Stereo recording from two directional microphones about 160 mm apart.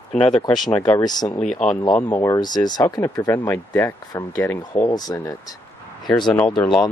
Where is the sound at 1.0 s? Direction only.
25° left (ahead or behind).